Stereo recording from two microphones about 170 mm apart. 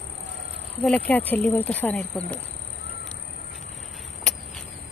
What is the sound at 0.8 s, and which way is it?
Speech, 5° left (ahead or behind).